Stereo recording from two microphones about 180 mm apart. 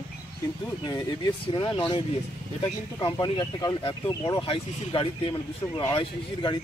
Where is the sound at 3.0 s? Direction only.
25° left (ahead or behind).